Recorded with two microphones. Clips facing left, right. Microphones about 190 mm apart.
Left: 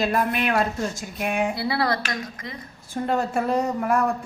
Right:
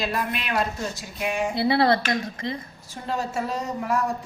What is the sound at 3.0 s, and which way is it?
Speech, 55° left (ahead or behind).